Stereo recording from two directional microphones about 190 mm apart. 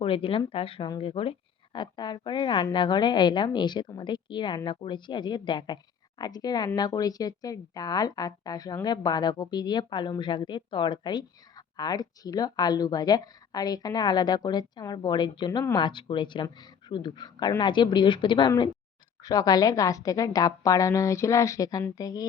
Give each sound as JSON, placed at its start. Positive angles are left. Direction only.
{"t": 0.0, "sound": "a woman's voice", "side_deg": 30}